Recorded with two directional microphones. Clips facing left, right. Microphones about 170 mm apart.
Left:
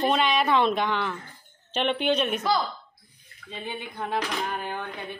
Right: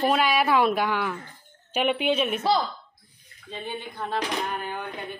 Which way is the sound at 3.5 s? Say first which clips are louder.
Right 1 dB; 15° left (ahead or behind).